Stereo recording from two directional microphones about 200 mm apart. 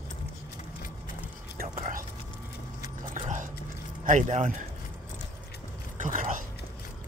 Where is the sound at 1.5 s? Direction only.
40° right (ahead or behind).